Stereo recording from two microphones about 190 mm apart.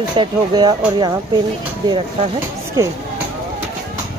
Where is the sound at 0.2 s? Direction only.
25° right (ahead or behind).